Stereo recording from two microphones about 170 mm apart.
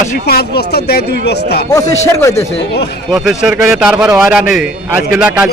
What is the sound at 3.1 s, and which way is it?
A man's voice, 5° right (ahead or behind).